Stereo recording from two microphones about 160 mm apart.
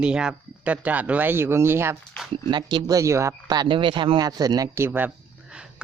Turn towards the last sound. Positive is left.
turn(degrees=-5)  # may be behind; listen again after turning